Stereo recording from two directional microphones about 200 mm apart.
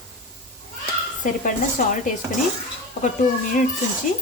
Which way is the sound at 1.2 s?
40° left (ahead or behind).